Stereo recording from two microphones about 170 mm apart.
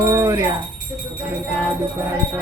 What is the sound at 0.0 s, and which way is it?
Jingle bell, 15° right (ahead or behind).